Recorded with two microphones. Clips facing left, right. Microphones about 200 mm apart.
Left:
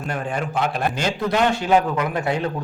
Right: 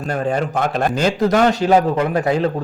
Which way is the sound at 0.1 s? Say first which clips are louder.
Right 6 dB; 40° right (ahead or behind).